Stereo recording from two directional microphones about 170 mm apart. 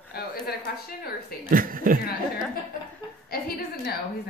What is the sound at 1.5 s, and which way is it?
Speech, 55° right (ahead or behind).